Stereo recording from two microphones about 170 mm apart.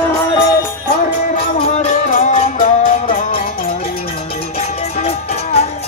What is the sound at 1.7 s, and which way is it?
Music, 40° left (ahead or behind).